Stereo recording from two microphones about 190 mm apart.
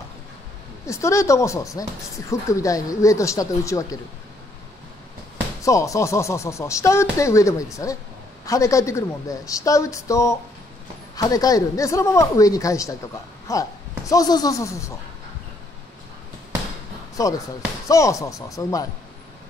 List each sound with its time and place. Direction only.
0.8 s speech: 15° left (ahead or behind)
5.6 s speech: 15° left (ahead or behind)
17.2 s speech: 15° left (ahead or behind)